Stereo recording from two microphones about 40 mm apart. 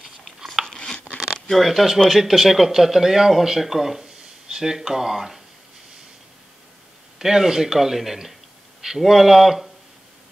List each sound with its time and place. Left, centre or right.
0.7 s a sound: centre
1.3 s speech: centre
7.2 s speech: centre